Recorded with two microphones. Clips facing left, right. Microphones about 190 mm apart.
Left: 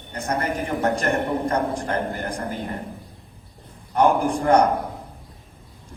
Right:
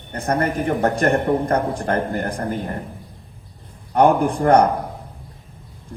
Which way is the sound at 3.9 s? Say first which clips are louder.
Right 3 dB; 60° right (ahead or behind).